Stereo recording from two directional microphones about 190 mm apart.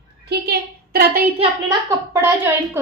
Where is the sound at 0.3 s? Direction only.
55° right (ahead or behind).